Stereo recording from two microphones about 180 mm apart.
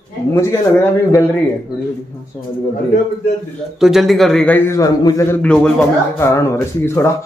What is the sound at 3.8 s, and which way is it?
A man's voice, centre (ahead or behind).